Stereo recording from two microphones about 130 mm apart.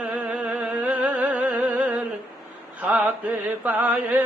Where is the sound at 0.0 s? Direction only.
5° right (ahead or behind).